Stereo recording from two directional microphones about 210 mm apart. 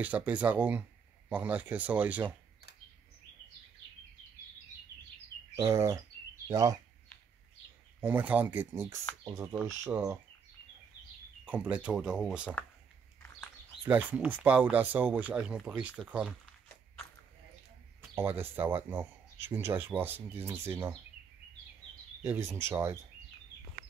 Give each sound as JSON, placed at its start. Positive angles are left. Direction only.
{"t": 0.0, "sound": "speech", "side_deg": -5}
{"t": 5.6, "sound": "speech", "side_deg": -15}
{"t": 8.0, "sound": "speech", "side_deg": -10}
{"t": 11.4, "sound": "speech", "side_deg": -5}
{"t": 13.8, "sound": "speech", "side_deg": -5}
{"t": 18.1, "sound": "speech", "side_deg": -10}
{"t": 22.2, "sound": "speech", "side_deg": -10}